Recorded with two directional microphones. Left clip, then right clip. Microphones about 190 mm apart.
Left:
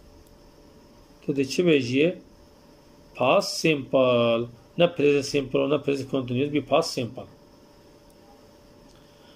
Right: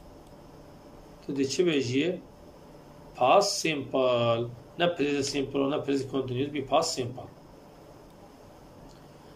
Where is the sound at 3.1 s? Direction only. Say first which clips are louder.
Even; 45° left (ahead or behind).